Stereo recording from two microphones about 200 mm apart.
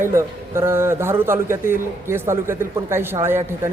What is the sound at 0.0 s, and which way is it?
Speech, 15° right (ahead or behind).